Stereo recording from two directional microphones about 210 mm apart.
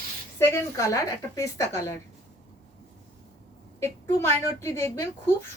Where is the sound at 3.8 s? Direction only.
10° left (ahead or behind).